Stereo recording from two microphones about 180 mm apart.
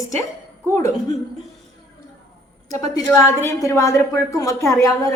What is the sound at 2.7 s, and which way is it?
A woman's voice, 20° left (ahead or behind).